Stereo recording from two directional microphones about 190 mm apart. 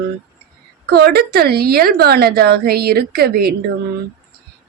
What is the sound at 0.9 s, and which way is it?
A woman's voice, 55° right (ahead or behind).